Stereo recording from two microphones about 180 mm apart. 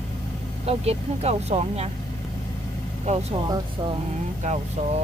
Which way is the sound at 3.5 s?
25° right (ahead or behind).